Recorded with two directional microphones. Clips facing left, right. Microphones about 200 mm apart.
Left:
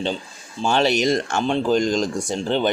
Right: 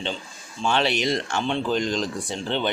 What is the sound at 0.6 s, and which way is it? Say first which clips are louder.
Speech: left 4 dB; 40° left (ahead or behind).